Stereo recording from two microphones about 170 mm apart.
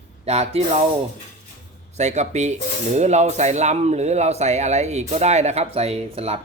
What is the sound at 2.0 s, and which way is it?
Speech, 45° right (ahead or behind).